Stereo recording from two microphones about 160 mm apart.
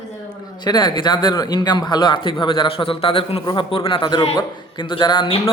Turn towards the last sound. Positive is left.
turn(degrees=30)  # may be behind; listen again after turning